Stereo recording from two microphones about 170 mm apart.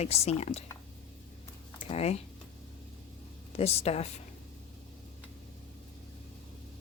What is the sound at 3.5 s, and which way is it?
Speech, 35° left (ahead or behind).